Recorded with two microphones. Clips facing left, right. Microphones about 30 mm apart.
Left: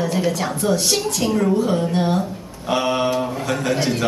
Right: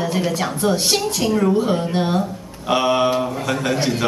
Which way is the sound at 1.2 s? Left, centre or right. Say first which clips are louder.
Right 1 dB; centre.